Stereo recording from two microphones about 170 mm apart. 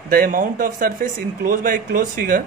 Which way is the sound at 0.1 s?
55° right (ahead or behind).